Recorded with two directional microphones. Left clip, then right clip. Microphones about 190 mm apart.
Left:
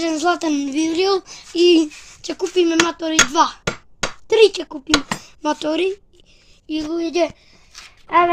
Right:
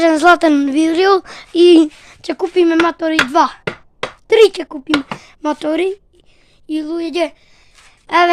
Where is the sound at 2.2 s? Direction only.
90° right.